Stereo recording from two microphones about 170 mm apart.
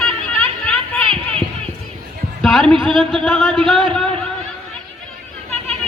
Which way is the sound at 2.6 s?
30° right (ahead or behind).